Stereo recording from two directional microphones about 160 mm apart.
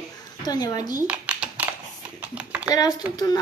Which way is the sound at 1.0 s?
10° right (ahead or behind).